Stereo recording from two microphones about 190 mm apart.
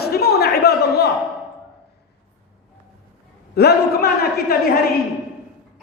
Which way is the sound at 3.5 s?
55° left (ahead or behind).